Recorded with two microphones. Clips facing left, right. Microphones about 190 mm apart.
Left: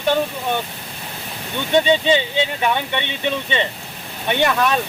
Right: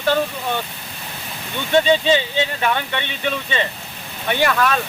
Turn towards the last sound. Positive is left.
turn(degrees=20)  # may be behind; listen again after turning